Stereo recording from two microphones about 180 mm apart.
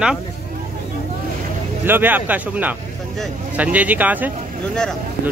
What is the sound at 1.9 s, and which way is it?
Speech, 10° right (ahead or behind).